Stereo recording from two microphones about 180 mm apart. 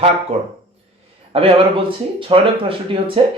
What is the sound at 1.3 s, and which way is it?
Speech, 30° right (ahead or behind).